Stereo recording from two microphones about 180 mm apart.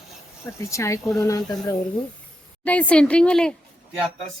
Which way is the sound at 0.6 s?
15° left (ahead or behind).